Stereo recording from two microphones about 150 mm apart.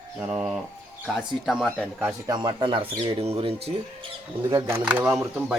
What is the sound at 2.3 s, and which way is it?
Speech, 30° right (ahead or behind).